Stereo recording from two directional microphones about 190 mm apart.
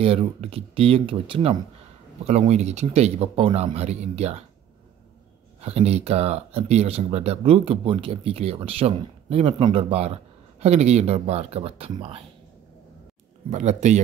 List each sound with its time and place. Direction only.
0.0 s speech: 30° right (ahead or behind)
5.6 s speech: 35° right (ahead or behind)
13.5 s speech: 40° right (ahead or behind)